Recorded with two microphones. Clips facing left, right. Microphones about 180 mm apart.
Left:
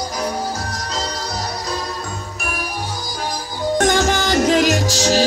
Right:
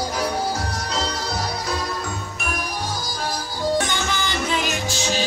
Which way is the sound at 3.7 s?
45° left (ahead or behind).